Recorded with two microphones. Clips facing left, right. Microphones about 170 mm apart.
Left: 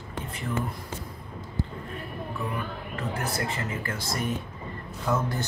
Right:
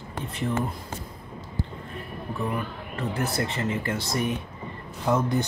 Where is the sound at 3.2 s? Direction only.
30° right (ahead or behind).